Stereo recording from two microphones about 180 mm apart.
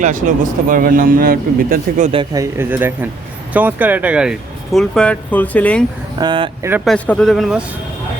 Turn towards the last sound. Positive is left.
turn(degrees=0)  # may be behind; listen again after turning